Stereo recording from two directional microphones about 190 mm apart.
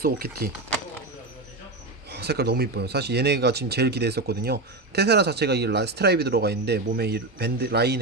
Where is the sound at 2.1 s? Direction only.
60° right (ahead or behind).